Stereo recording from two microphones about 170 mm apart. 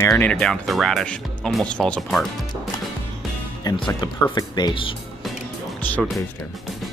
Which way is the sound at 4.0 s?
25° left (ahead or behind).